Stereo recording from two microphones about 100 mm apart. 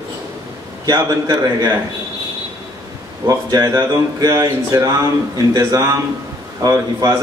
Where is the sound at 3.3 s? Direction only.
35° right (ahead or behind).